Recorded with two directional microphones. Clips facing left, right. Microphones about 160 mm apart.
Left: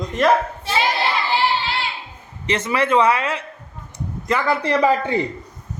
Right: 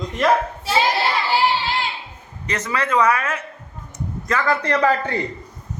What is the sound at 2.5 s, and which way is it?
Speech, 25° left (ahead or behind).